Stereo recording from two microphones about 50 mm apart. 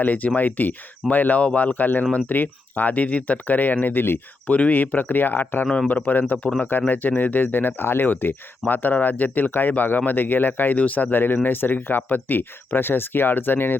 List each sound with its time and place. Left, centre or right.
0.0 s speech: left
4.4 s speech: left